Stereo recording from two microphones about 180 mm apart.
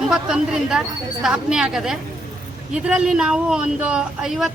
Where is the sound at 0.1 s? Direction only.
5° right (ahead or behind).